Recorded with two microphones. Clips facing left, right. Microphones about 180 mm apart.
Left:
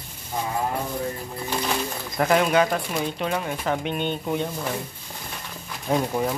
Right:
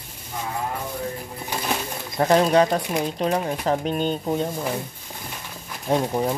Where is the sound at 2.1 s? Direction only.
30° right (ahead or behind).